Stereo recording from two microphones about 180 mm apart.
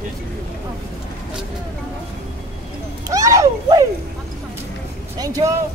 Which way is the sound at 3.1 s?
20° right (ahead or behind).